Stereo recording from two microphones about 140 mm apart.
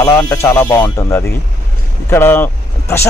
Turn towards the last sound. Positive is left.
turn(degrees=15)  # may be behind; listen again after turning